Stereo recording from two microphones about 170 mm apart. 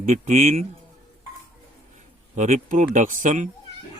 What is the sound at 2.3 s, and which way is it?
Speech, 45° right (ahead or behind).